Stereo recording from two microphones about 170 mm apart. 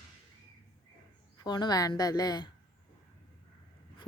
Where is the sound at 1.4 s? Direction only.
25° left (ahead or behind).